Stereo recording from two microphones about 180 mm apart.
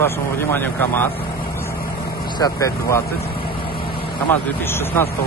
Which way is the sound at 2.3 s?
20° left (ahead or behind).